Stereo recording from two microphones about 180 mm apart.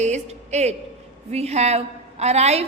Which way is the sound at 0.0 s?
40° right (ahead or behind).